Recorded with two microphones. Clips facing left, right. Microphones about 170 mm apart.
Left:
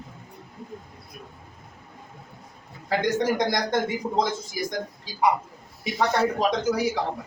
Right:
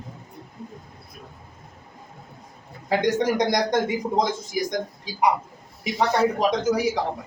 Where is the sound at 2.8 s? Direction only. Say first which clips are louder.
Right 2 dB; 20° right (ahead or behind).